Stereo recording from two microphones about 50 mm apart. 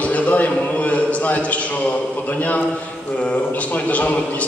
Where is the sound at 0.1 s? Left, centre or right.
Left.